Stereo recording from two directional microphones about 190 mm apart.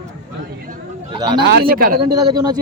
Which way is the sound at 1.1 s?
25° right (ahead or behind).